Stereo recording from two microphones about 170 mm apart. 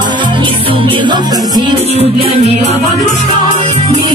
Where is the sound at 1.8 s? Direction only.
35° right (ahead or behind).